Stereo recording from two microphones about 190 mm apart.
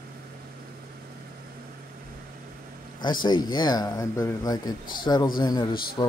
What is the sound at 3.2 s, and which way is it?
Speech, 25° left (ahead or behind).